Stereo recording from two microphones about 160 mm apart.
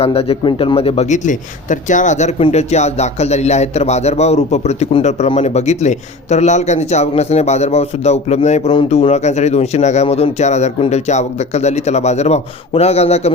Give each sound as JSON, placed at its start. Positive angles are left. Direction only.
{"t": 0.0, "sound": "a man's voice", "side_deg": 40}